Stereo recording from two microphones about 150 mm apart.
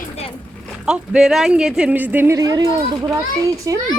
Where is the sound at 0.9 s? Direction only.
5° right (ahead or behind); by 3.8 s 25° right (ahead or behind).